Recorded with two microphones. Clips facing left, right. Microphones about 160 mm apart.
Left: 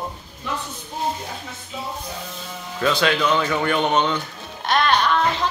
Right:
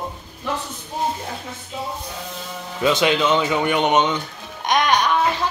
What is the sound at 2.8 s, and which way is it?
A woman's voice, 20° right (ahead or behind).